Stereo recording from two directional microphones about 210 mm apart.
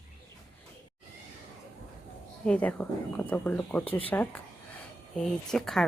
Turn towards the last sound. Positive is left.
turn(degrees=0)  # may be behind; listen again after turning